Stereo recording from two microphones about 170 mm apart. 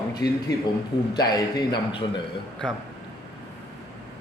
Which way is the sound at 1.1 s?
25° left (ahead or behind).